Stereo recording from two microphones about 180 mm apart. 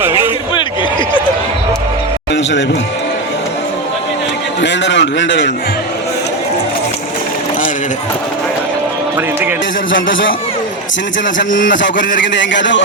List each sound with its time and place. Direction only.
0.1 s a sound: 25° left (ahead or behind)
2.3 s a man's voice: 80° left
4.6 s a man's voice: 80° left
9.9 s a man's voice: 90° left
12.3 s a man's voice: 90° left